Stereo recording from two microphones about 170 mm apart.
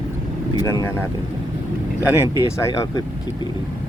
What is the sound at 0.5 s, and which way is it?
Speech, 20° left (ahead or behind).